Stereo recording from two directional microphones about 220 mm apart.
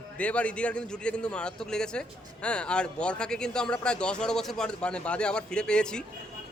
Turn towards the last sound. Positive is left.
turn(degrees=5)  # may be behind; listen again after turning